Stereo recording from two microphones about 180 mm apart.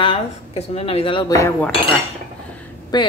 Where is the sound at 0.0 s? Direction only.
30° left (ahead or behind).